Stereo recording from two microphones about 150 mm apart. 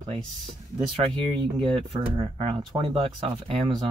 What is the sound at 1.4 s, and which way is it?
Speech, 35° right (ahead or behind).